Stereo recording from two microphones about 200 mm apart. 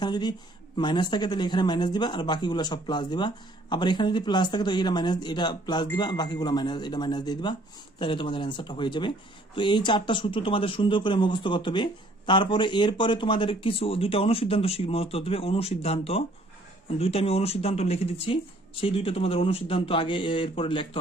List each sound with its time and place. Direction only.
0.0 s a woman's voice: 20° left (ahead or behind)